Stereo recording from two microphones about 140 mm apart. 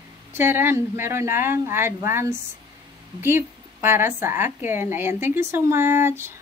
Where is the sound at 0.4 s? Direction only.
15° right (ahead or behind).